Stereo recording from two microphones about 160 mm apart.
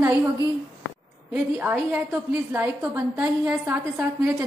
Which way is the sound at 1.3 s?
10° right (ahead or behind).